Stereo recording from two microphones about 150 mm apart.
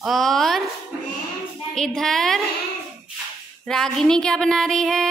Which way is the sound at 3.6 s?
5° left (ahead or behind).